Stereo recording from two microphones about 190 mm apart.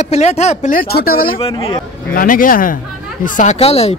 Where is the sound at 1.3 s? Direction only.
30° left (ahead or behind).